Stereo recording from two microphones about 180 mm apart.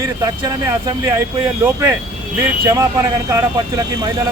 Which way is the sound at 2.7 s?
15° right (ahead or behind).